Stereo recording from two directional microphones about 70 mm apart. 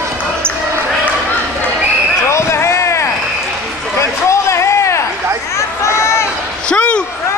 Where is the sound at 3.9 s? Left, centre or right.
Left.